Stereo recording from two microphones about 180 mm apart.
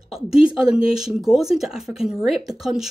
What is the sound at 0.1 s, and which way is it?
Speech, 5° right (ahead or behind).